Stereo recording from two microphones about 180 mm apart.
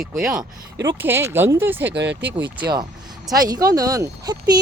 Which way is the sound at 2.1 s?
75° right (ahead or behind).